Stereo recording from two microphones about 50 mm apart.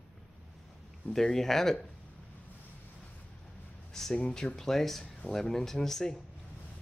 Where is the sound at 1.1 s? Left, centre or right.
Centre.